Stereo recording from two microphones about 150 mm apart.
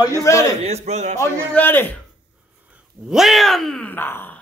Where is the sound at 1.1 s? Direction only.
15° left (ahead or behind).